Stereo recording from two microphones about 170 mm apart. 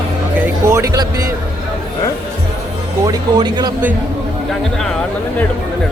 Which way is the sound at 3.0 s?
25° right (ahead or behind).